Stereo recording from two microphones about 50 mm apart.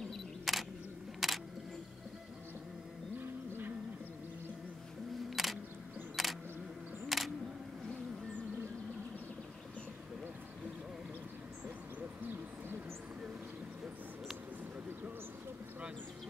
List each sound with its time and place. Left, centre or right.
0.5 s single-lens reflex camera: centre
5.3 s single-lens reflex camera: centre